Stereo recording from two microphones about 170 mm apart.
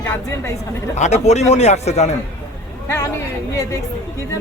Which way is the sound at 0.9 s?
40° left (ahead or behind).